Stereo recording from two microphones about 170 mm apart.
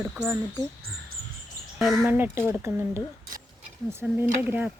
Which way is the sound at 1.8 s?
Centre (ahead or behind).